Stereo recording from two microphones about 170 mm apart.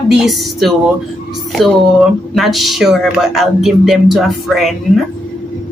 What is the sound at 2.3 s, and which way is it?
Speech, centre (ahead or behind).